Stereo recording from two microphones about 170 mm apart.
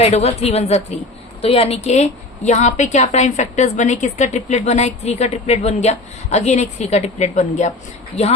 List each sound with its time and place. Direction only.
0.0 s a woman's voice: 40° left (ahead or behind)